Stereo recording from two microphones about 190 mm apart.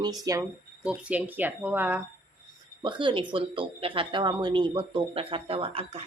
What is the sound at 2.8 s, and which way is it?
Speech, 25° right (ahead or behind).